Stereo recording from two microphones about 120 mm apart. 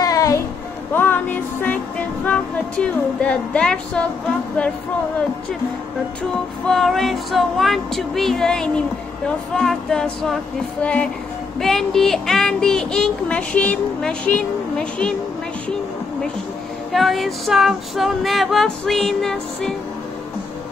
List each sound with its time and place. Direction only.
0.0 s music: 30° left (ahead or behind)
0.9 s music: 15° left (ahead or behind)
6.3 s speech: 5° left (ahead or behind)
16.9 s speech: centre (ahead or behind)